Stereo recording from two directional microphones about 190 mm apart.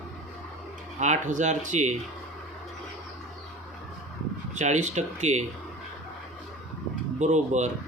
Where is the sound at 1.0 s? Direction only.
40° right (ahead or behind).